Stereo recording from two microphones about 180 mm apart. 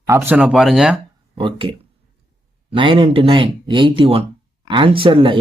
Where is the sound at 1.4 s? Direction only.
30° right (ahead or behind).